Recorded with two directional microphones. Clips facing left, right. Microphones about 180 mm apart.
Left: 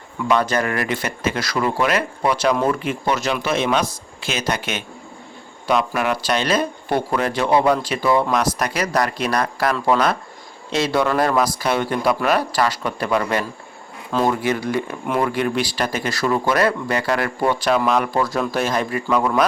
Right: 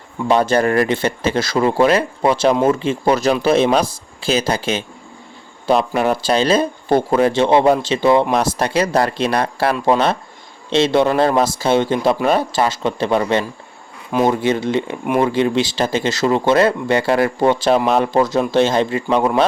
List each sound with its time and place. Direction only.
0.3 s speech: 30° right (ahead or behind)